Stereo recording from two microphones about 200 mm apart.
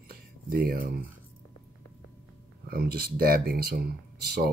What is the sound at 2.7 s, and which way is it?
Speech, 50° right (ahead or behind).